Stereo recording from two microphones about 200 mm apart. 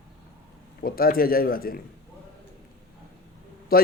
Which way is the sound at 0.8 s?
45° left (ahead or behind).